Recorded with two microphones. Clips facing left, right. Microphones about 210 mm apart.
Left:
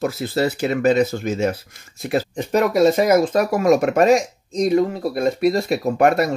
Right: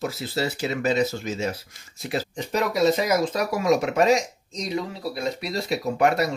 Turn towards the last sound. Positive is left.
turn(degrees=50)  # may be behind; listen again after turning